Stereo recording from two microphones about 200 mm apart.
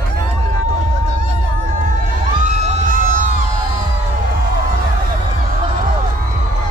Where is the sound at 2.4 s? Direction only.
35° right (ahead or behind).